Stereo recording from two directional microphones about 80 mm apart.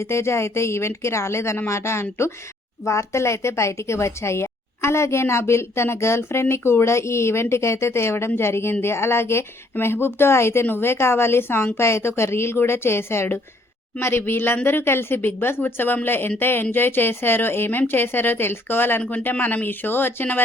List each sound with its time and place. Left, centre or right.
0.0 s a woman's voice: left